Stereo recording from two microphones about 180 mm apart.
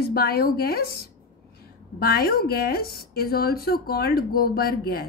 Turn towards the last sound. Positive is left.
turn(degrees=55)  # may be behind; listen again after turning